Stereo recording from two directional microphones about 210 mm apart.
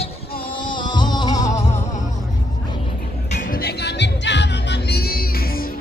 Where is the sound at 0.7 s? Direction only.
20° left (ahead or behind).